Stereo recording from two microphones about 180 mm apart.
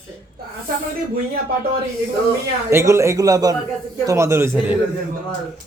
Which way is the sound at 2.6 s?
15° right (ahead or behind).